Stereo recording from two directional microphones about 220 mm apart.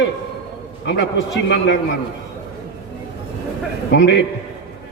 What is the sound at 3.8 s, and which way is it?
Speech, 55° left (ahead or behind).